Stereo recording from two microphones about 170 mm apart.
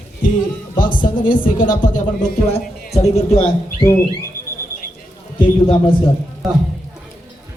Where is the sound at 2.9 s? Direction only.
40° left (ahead or behind).